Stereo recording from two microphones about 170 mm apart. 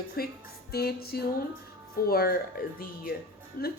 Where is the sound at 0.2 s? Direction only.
60° left (ahead or behind).